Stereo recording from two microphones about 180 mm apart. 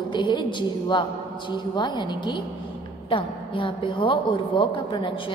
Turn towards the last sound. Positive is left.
turn(degrees=25)  # may be behind; listen again after turning